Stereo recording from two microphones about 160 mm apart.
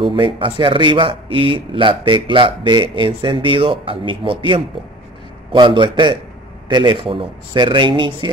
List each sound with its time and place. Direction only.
0.0 s speech: 30° right (ahead or behind)